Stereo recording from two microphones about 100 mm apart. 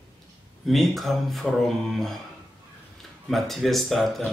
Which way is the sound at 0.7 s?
Centre (ahead or behind).